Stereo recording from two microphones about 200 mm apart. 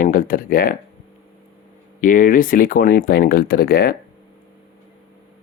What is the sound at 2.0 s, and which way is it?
Speech, 40° left (ahead or behind).